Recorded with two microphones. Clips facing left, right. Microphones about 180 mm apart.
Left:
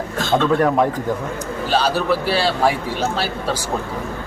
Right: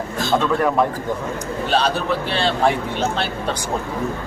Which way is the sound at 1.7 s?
5° left (ahead or behind).